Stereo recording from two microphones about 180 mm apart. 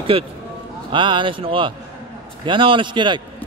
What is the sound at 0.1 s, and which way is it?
Speech, 30° right (ahead or behind).